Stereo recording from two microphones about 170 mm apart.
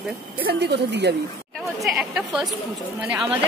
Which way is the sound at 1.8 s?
Centre (ahead or behind).